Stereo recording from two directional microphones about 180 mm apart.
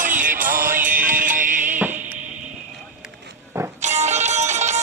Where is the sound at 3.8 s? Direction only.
40° right (ahead or behind).